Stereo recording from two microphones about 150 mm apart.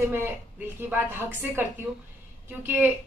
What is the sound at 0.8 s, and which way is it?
A woman's voice, 15° right (ahead or behind).